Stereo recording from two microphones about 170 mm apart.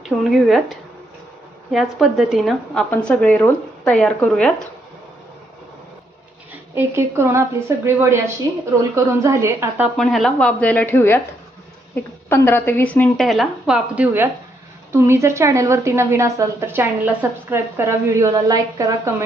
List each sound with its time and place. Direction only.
0.0 s a woman's voice: centre (ahead or behind)
6.7 s a woman's voice: 15° right (ahead or behind)
9.2 s a woman's voice: 15° right (ahead or behind)
10.0 s a woman's voice: centre (ahead or behind); by 19.1 s 20° right (ahead or behind)